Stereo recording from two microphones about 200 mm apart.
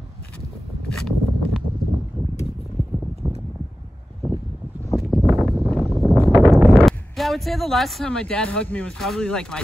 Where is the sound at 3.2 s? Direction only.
15° right (ahead or behind).